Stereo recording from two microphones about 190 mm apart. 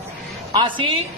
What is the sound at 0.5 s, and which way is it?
Speech, 25° right (ahead or behind).